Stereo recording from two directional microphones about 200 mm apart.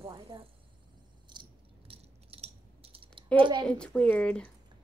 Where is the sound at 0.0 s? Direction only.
15° right (ahead or behind).